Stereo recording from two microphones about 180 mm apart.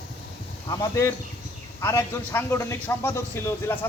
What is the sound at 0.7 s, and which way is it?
A man's voice, 20° left (ahead or behind).